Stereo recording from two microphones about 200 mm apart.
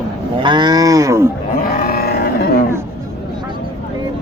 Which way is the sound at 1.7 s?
50° left (ahead or behind).